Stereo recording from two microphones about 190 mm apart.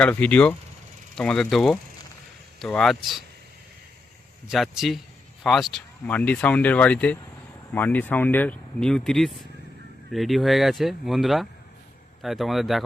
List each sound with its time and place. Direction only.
0.0 s speech: 10° left (ahead or behind)
4.4 s speech: centre (ahead or behind)